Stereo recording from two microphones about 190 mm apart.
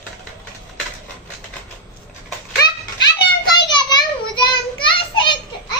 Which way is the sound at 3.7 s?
20° left (ahead or behind).